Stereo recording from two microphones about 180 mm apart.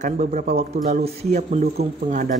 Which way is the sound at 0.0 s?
40° right (ahead or behind).